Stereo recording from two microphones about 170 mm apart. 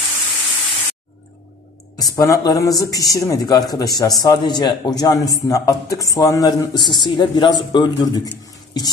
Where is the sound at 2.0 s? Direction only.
20° left (ahead or behind).